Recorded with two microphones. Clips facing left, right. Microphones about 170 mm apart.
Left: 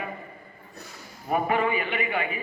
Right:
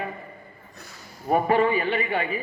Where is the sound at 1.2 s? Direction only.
35° right (ahead or behind).